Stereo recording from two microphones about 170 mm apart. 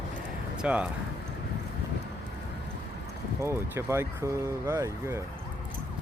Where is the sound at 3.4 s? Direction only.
15° right (ahead or behind).